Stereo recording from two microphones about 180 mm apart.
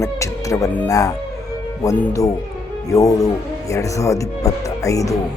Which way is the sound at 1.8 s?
20° left (ahead or behind).